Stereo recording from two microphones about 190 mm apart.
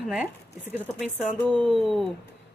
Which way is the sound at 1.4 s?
Centre (ahead or behind).